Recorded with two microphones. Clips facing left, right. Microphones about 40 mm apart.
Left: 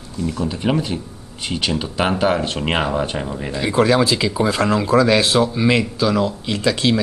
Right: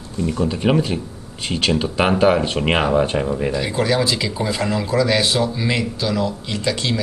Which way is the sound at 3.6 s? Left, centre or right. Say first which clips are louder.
Left 7 dB; left.